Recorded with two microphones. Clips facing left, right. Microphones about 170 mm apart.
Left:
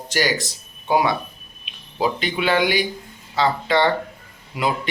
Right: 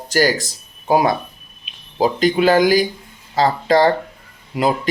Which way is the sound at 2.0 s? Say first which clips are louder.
Right 7 dB; 40° right (ahead or behind).